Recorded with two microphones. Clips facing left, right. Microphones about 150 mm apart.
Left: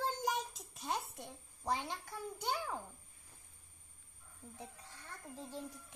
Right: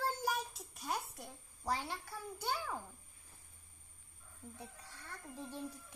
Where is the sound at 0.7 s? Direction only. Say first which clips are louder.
Left 1 dB; 25° left (ahead or behind).